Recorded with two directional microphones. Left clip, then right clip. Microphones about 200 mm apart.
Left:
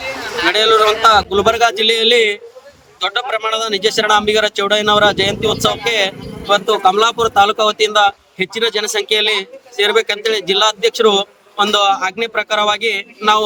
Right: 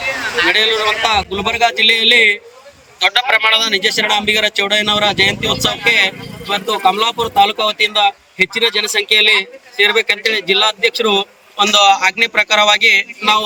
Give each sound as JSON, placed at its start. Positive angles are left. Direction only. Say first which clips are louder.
{"t": 0.5, "sound": "a man's voice", "louder": "left 4 dB", "side_deg": 15}
{"t": 0.8, "sound": "a man's voice", "louder": "left 3 dB", "side_deg": 50}
{"t": 1.0, "sound": "a man's voice", "louder": "left 5 dB", "side_deg": 15}